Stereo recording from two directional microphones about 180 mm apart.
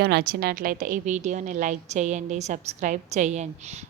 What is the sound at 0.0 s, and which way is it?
A woman's voice, 65° right (ahead or behind).